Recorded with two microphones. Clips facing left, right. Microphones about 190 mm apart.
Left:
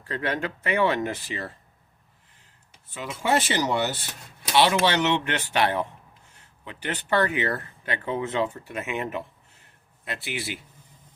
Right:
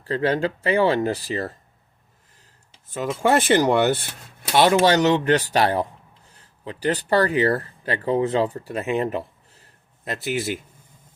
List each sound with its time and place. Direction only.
0.0 s speech: 30° right (ahead or behind)
2.9 s speech: 45° right (ahead or behind)
4.5 s speech: 45° right (ahead or behind)